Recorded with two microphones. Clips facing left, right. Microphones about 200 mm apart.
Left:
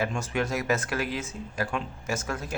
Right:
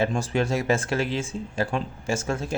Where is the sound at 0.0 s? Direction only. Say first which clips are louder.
Right 4 dB; 35° right (ahead or behind).